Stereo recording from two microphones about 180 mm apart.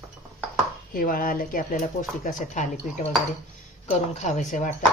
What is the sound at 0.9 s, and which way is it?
Speech, 50° left (ahead or behind).